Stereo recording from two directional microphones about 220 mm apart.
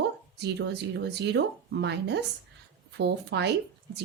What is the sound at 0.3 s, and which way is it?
Speech, 50° right (ahead or behind).